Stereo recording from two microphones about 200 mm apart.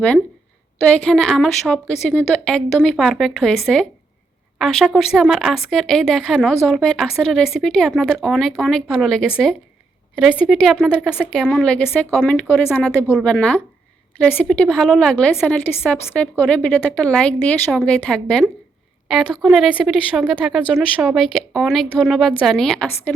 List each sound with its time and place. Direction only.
0.9 s speech: 5° left (ahead or behind)